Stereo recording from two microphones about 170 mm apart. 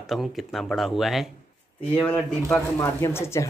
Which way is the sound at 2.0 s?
10° left (ahead or behind).